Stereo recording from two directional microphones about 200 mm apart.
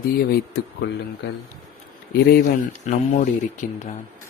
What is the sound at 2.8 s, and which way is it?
Speech, 40° left (ahead or behind).